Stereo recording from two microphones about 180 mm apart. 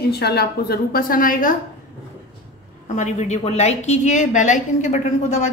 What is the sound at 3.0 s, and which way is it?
A woman's voice, 40° left (ahead or behind).